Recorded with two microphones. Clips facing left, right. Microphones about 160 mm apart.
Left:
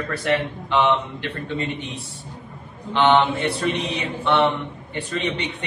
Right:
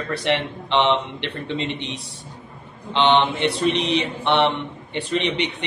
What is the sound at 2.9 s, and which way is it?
Speech, 20° right (ahead or behind).